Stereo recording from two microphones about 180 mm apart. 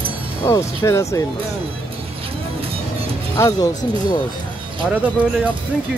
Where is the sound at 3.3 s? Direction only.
20° left (ahead or behind).